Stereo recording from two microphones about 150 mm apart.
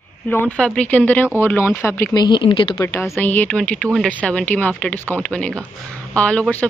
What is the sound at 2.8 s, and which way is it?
Speech, 20° left (ahead or behind).